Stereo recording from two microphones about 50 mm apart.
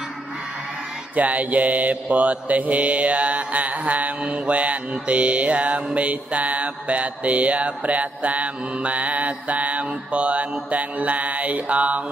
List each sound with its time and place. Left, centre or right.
1.1 s mantra: right